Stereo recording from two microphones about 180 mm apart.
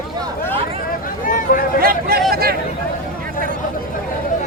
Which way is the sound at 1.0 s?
50° left (ahead or behind).